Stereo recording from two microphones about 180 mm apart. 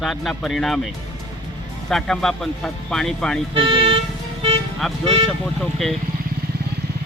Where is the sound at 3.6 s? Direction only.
30° right (ahead or behind).